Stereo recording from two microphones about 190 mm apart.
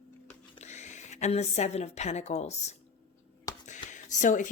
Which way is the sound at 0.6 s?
40° left (ahead or behind).